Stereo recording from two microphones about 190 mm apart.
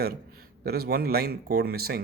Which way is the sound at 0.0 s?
55° right (ahead or behind).